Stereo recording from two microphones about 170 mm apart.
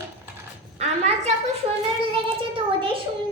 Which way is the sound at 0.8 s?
40° right (ahead or behind).